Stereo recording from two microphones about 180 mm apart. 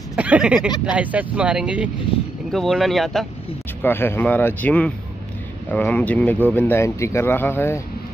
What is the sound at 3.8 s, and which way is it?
Speech, 10° left (ahead or behind).